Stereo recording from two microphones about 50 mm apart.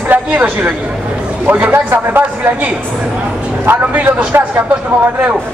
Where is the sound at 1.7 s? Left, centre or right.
Right.